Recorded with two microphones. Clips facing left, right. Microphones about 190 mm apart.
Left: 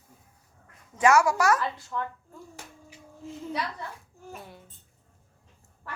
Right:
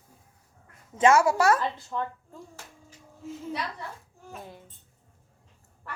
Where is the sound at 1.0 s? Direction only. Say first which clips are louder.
Right 1 dB; 25° right (ahead or behind).